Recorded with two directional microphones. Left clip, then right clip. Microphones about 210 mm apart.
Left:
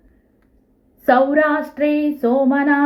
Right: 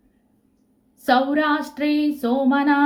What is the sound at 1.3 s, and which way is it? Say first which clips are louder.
A woman's voice: left 4 dB; centre (ahead or behind).